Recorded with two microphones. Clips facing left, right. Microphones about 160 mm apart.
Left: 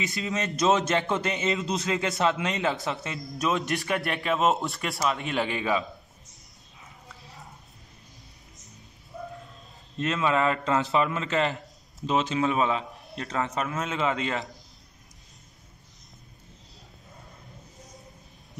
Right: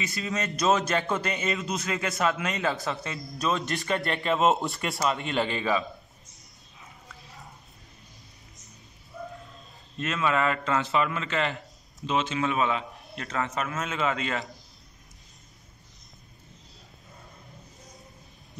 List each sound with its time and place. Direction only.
0.0 s a man's voice: 20° left (ahead or behind)
3.8 s speech: 5° left (ahead or behind)
9.9 s a man's voice: 25° left (ahead or behind)
13.4 s a man's voice: 20° left (ahead or behind)